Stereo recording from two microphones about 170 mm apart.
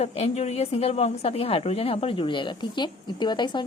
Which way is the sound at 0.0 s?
40° left (ahead or behind).